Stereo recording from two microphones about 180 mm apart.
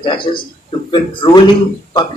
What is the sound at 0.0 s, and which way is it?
Speech, 25° left (ahead or behind).